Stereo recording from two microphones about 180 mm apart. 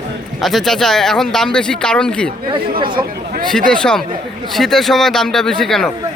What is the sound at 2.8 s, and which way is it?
Speech, 25° right (ahead or behind).